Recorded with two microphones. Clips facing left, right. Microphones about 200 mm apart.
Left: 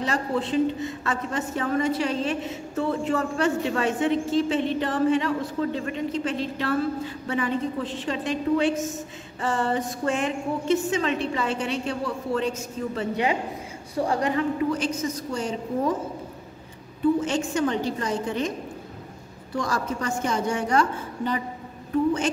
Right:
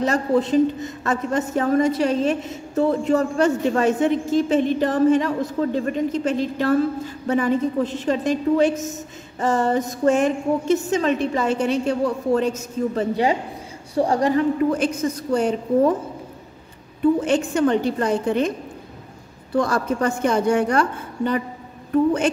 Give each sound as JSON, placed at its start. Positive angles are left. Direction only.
{"t": 0.0, "sound": "a woman's voice", "side_deg": -45}
{"t": 14.6, "sound": "a woman's voice", "side_deg": -50}
{"t": 17.2, "sound": "a woman's voice", "side_deg": -60}
{"t": 19.5, "sound": "a woman's voice", "side_deg": -60}